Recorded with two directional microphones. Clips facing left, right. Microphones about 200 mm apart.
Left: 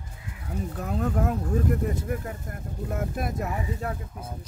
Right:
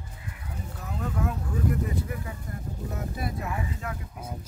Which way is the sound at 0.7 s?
50° left (ahead or behind).